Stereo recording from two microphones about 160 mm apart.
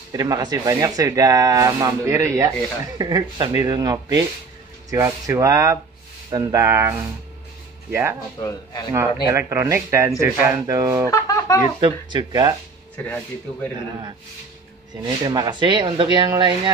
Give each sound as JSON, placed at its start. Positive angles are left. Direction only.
{"t": 0.1, "sound": "speech", "side_deg": -20}
{"t": 8.4, "sound": "speech", "side_deg": 25}
{"t": 8.9, "sound": "speech", "side_deg": -15}
{"t": 11.1, "sound": "speech", "side_deg": 20}
{"t": 11.8, "sound": "speech", "side_deg": -30}
{"t": 12.9, "sound": "speech", "side_deg": 10}
{"t": 15.0, "sound": "speech", "side_deg": -25}